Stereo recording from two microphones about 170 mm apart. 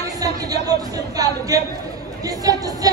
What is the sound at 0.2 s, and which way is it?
Speech, 20° right (ahead or behind).